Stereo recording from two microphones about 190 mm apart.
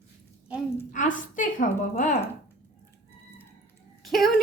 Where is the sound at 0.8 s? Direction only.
45° left (ahead or behind).